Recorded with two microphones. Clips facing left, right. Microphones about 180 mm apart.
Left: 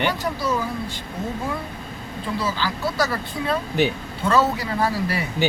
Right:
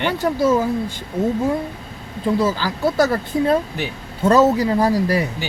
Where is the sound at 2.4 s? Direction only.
45° right (ahead or behind).